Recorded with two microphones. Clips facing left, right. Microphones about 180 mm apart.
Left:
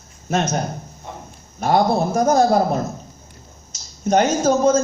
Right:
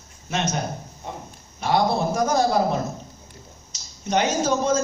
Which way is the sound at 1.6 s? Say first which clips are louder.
Left 4 dB; 45° left (ahead or behind).